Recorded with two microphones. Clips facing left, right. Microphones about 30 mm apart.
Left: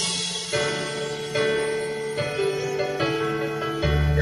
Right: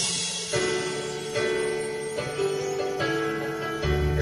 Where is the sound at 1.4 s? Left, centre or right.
Left.